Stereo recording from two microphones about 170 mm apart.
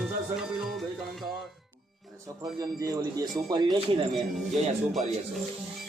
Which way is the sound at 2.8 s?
20° right (ahead or behind).